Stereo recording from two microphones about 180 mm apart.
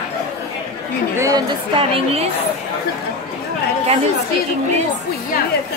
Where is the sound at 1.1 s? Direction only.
20° right (ahead or behind).